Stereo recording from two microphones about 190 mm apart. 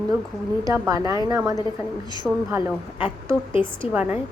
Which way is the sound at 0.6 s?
20° right (ahead or behind).